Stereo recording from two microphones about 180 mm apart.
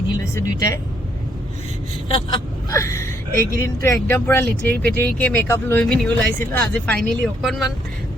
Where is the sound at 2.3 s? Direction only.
20° left (ahead or behind).